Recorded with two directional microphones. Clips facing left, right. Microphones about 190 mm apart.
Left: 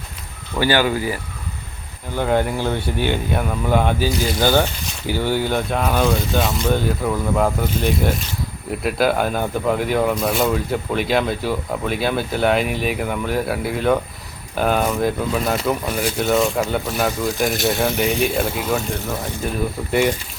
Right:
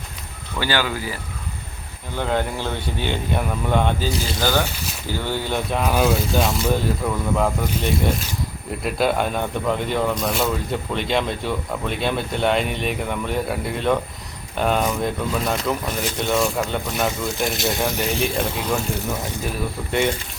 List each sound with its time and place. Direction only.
0.6 s speech: 25° left (ahead or behind)
2.1 s speech: 10° left (ahead or behind)
4.4 s speech: 20° left (ahead or behind)
5.5 s speech: centre (ahead or behind)